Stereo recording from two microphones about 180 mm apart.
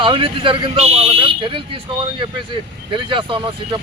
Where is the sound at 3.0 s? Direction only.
25° right (ahead or behind).